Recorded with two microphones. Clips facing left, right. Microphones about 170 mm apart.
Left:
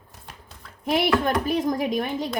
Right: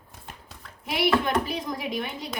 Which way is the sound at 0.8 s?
45° left (ahead or behind).